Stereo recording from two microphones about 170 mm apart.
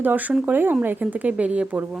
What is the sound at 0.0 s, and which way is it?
Speech, 10° right (ahead or behind).